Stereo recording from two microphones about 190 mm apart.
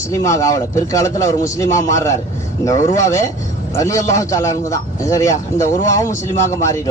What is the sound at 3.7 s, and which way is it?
A man's voice, 15° left (ahead or behind).